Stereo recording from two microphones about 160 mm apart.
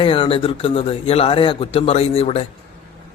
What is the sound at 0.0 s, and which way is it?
A man's voice, 35° left (ahead or behind).